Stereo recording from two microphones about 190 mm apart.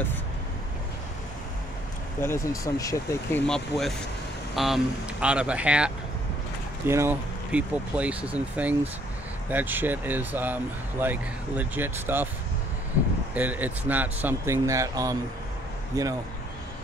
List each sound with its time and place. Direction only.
2.1 s speech: 15° left (ahead or behind)
3.4 s speech: centre (ahead or behind)
6.9 s speech: 10° right (ahead or behind)
13.3 s speech: 10° right (ahead or behind)